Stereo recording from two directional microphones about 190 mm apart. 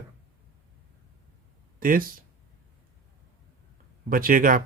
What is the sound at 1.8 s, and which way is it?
Speech, 50° right (ahead or behind).